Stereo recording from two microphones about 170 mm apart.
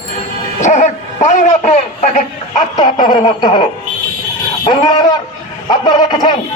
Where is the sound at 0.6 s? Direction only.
45° left (ahead or behind).